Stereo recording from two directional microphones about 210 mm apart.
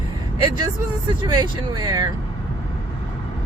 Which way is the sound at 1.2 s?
20° right (ahead or behind).